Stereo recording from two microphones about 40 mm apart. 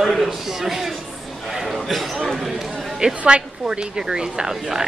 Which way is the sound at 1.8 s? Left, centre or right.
Centre.